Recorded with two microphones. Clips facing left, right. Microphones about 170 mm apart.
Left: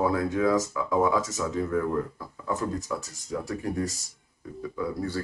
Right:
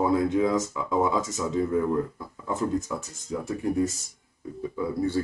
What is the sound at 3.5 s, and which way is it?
Speech, 25° right (ahead or behind).